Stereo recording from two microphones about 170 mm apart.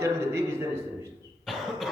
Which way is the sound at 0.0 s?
15° right (ahead or behind).